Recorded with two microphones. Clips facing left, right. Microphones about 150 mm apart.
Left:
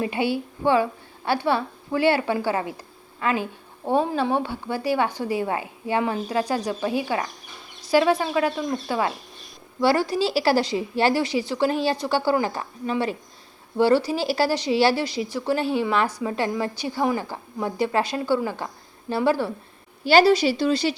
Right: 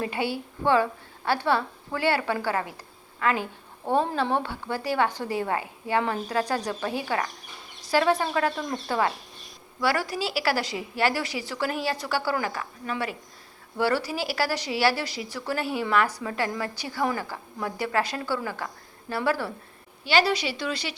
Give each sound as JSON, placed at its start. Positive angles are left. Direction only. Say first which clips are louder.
{"t": 0.0, "sound": "a woman's voice", "louder": "left 4 dB", "side_deg": 20}
{"t": 9.8, "sound": "speech", "louder": "left 6 dB", "side_deg": 25}
{"t": 20.1, "sound": "speech", "louder": "left 7 dB", "side_deg": 40}